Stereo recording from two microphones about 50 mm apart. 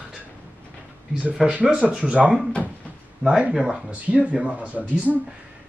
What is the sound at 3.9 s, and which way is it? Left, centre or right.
Speech, right.